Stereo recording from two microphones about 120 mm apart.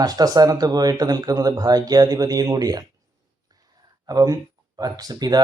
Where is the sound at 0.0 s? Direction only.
30° right (ahead or behind).